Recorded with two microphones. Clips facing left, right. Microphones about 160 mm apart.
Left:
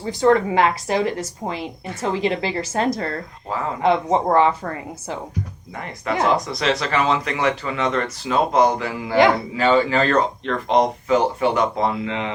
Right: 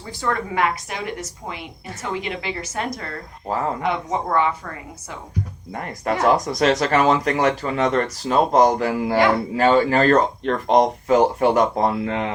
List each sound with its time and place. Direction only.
0.1 s a woman's voice: 20° left (ahead or behind)
5.7 s speech: 45° right (ahead or behind)